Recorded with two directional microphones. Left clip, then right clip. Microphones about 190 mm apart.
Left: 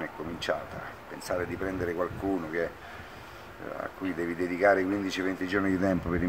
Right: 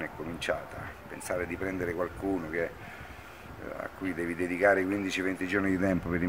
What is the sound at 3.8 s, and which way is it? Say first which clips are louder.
Speech: left 1 dB; 15° right (ahead or behind).